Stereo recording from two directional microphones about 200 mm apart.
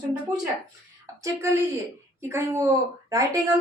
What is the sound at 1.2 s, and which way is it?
A woman's voice, 15° right (ahead or behind).